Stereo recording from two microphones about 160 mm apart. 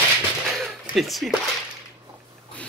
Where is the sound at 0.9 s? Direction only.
Centre (ahead or behind).